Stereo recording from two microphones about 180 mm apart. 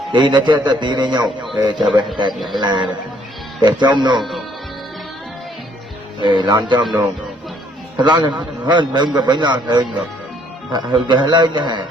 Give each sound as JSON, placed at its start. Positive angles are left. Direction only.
{"t": 0.1, "sound": "a man's voice", "side_deg": -25}
{"t": 6.2, "sound": "a man's voice", "side_deg": -25}
{"t": 7.9, "sound": "a man's voice", "side_deg": -25}